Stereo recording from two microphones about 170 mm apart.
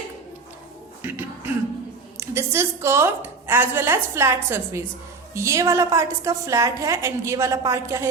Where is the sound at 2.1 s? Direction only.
15° right (ahead or behind).